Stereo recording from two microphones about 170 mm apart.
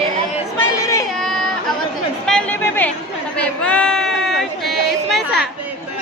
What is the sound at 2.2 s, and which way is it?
Chatter, 5° left (ahead or behind).